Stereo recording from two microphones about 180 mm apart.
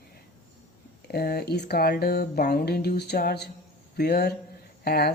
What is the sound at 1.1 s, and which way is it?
Speech, 60° left (ahead or behind).